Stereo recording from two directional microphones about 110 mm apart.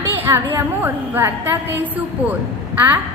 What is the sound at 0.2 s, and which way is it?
A woman's voice, 20° right (ahead or behind).